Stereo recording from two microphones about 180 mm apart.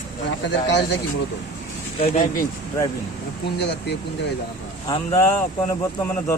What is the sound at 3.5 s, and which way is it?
Speech, 70° left (ahead or behind).